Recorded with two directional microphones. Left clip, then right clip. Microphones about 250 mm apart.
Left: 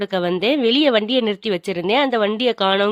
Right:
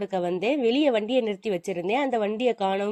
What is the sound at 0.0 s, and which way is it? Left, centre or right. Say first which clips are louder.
A woman's voice: left 6 dB; centre.